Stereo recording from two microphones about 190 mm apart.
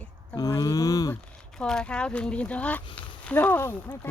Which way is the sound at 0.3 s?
20° left (ahead or behind).